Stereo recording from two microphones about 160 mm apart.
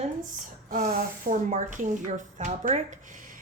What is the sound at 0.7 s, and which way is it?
A woman's voice, 60° right (ahead or behind).